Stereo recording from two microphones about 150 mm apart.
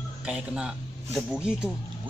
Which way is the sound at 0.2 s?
5° right (ahead or behind).